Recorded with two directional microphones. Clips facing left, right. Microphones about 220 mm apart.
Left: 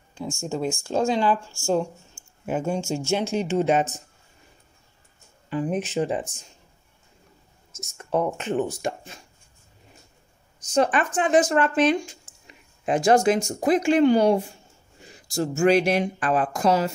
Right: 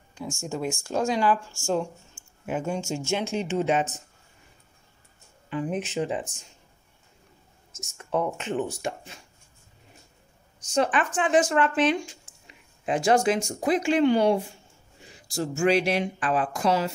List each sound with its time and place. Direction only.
0.1 s speech: 25° left (ahead or behind)
2.4 s speech: 40° left (ahead or behind)
5.5 s speech: 40° left (ahead or behind)
7.7 s speech: 40° left (ahead or behind)
10.7 s speech: 40° left (ahead or behind)